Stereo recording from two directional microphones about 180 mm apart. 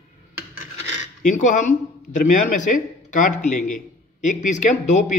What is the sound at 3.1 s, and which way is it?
A man's voice, 45° left (ahead or behind).